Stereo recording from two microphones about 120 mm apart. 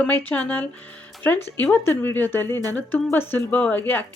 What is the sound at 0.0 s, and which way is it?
Speech, 15° left (ahead or behind).